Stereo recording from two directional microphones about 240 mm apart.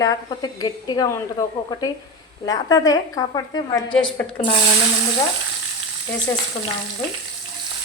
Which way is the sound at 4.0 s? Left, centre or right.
Centre.